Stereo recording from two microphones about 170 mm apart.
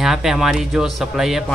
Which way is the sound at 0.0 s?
5° right (ahead or behind).